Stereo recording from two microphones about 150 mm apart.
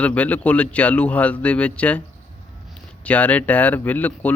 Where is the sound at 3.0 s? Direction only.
10° left (ahead or behind).